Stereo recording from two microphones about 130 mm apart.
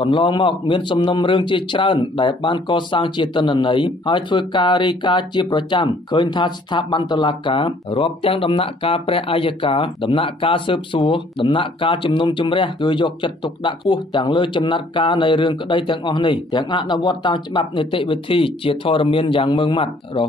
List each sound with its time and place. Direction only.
0.0 s a man's voice: 40° left (ahead or behind)